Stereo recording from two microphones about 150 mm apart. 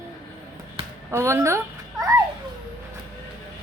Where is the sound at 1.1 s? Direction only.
15° right (ahead or behind).